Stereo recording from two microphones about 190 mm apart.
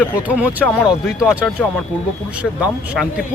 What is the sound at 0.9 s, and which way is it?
Speech, 5° right (ahead or behind).